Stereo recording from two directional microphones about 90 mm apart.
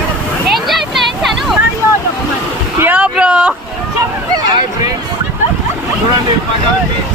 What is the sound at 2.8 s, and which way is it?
Speech, 15° right (ahead or behind).